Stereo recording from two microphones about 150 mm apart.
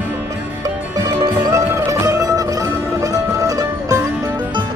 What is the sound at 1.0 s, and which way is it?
Music, 25° right (ahead or behind).